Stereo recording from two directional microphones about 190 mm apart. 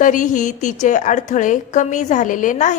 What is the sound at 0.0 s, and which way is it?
A woman's voice, 40° left (ahead or behind).